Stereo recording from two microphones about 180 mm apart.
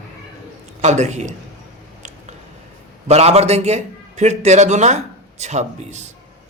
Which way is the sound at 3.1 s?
35° right (ahead or behind).